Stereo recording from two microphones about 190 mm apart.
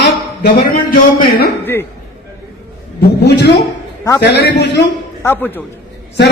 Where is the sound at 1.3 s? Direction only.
55° left (ahead or behind).